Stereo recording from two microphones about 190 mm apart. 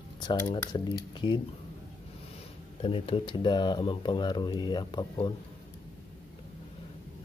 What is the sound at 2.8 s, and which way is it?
Speech, 30° left (ahead or behind).